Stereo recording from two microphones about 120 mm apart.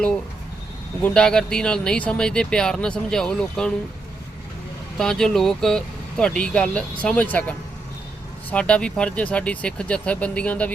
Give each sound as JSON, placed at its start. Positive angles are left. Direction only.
{"t": 1.0, "sound": "speech", "side_deg": 5}
{"t": 4.9, "sound": "speech", "side_deg": 5}